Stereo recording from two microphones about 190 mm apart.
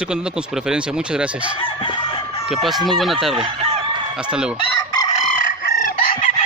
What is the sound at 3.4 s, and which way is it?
Chicken, 30° right (ahead or behind).